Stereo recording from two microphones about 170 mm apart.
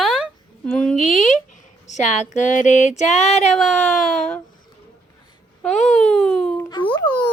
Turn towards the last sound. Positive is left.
turn(degrees=25)  # may be behind; listen again after turning